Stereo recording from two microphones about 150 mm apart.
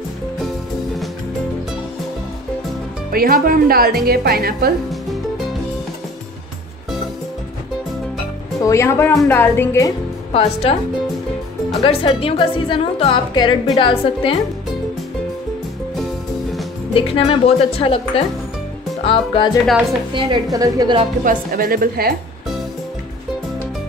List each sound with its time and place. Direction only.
3.1 s speech: 80° right
8.5 s a woman's voice: 20° left (ahead or behind)
10.3 s a woman's voice: 40° left (ahead or behind)
11.8 s a woman's voice: 35° left (ahead or behind)
16.9 s a woman's voice: 40° left (ahead or behind)
19.6 s a woman's voice: centre (ahead or behind)
20.2 s a woman's voice: 35° right (ahead or behind)
21.2 s speech: 70° right (ahead or behind)